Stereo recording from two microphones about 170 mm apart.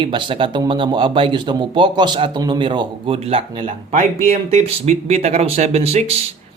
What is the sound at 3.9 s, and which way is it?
A man's voice, 45° right (ahead or behind).